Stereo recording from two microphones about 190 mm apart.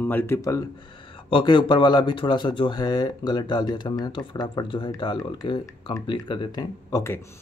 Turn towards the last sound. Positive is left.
turn(degrees=15)  # may be behind; listen again after turning